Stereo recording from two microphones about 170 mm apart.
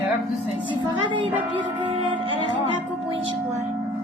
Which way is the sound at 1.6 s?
30° right (ahead or behind).